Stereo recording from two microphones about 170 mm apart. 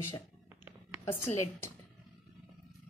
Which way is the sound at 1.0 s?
15° left (ahead or behind).